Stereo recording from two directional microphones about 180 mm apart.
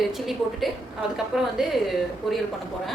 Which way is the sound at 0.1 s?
Centre (ahead or behind).